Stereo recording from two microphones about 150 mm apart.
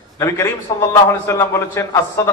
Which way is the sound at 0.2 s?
20° left (ahead or behind).